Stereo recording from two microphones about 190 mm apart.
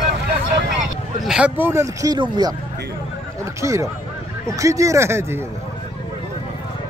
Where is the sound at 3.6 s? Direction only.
15° right (ahead or behind).